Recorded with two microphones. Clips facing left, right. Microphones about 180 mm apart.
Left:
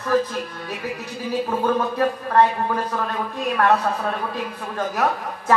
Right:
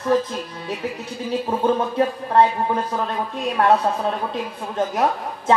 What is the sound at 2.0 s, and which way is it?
A man's voice, 25° right (ahead or behind).